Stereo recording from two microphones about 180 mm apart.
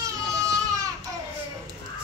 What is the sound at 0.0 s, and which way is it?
Baby cry, 20° right (ahead or behind).